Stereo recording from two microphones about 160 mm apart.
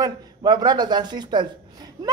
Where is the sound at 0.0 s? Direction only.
25° right (ahead or behind).